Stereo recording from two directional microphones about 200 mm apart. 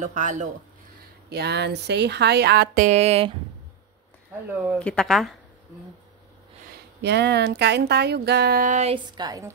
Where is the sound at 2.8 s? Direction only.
30° right (ahead or behind).